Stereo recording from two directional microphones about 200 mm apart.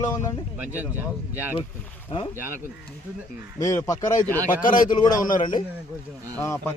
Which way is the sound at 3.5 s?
15° left (ahead or behind).